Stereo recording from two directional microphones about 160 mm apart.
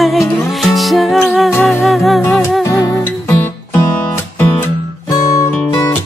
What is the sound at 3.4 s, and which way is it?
Music, 15° left (ahead or behind).